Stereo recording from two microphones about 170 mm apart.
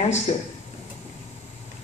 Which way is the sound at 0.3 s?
40° left (ahead or behind).